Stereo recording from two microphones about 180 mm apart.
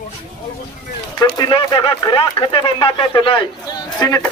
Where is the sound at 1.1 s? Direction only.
20° left (ahead or behind).